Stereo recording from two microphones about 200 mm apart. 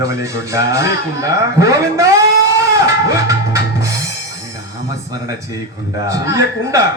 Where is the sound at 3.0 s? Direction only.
15° right (ahead or behind).